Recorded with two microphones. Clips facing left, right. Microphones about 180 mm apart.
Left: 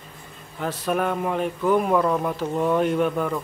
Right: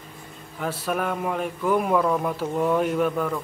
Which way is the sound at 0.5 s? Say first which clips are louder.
Left 2 dB; 10° right (ahead or behind).